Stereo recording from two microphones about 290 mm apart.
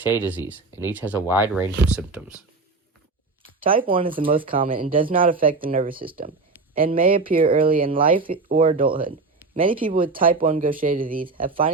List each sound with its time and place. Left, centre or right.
0.2 s speech: centre
3.6 s speech: centre
9.6 s speech: centre
9.9 s speech: right